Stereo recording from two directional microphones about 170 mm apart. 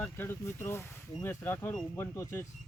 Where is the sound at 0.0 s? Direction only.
15° left (ahead or behind).